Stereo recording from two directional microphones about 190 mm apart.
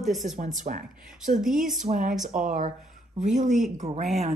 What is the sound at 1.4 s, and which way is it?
Speech, centre (ahead or behind).